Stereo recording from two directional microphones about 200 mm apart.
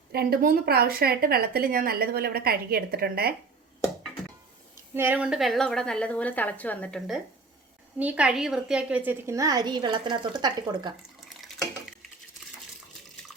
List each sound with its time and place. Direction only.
0.1 s speech: 50° right (ahead or behind)
4.9 s a woman's voice: 10° right (ahead or behind)
7.9 s a woman's voice: 5° right (ahead or behind)
11.2 s water: centre (ahead or behind)